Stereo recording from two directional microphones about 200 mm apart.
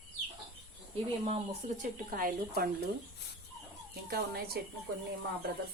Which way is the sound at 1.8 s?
45° right (ahead or behind).